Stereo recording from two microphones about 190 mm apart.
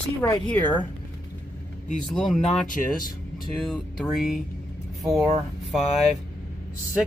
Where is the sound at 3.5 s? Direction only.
Centre (ahead or behind).